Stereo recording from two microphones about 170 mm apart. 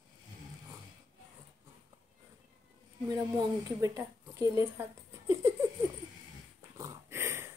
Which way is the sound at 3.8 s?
20° right (ahead or behind).